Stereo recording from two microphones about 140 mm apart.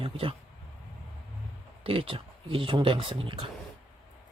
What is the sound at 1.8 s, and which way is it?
Speech, 40° right (ahead or behind).